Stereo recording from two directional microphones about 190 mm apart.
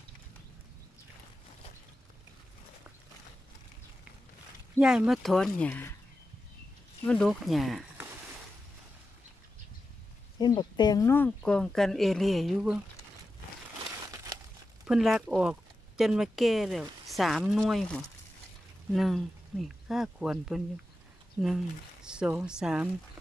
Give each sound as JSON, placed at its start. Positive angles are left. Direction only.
{"t": 4.7, "sound": "speech", "side_deg": -5}
{"t": 7.1, "sound": "speech", "side_deg": 0}
{"t": 10.4, "sound": "speech", "side_deg": 20}
{"t": 14.0, "sound": "crumpling", "side_deg": -20}
{"t": 14.9, "sound": "speech", "side_deg": 0}